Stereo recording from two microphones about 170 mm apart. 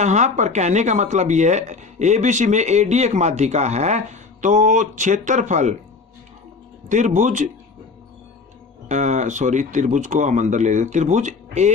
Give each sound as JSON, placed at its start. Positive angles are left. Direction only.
{"t": 0.0, "sound": "speech", "side_deg": -45}
{"t": 6.8, "sound": "speech", "side_deg": -45}
{"t": 8.9, "sound": "speech", "side_deg": -45}